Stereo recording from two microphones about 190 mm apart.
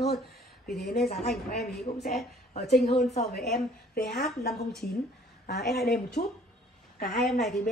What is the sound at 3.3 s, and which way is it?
Speech, 55° left (ahead or behind).